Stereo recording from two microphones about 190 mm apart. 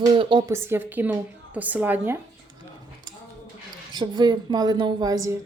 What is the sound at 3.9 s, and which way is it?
A woman's voice, 25° right (ahead or behind).